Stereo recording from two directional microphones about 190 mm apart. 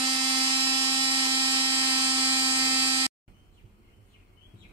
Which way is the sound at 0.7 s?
20° right (ahead or behind).